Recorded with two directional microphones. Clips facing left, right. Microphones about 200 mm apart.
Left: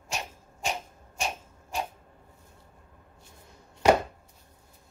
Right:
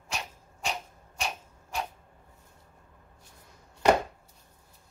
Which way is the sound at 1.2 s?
25° left (ahead or behind).